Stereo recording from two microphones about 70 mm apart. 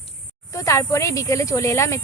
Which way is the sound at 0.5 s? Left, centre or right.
Left.